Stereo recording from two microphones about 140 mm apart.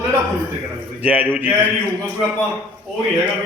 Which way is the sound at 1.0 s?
10° right (ahead or behind).